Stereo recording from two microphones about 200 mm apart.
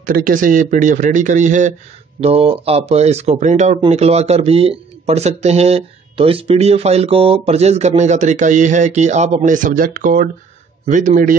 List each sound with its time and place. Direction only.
0.0 s speech: 45° right (ahead or behind)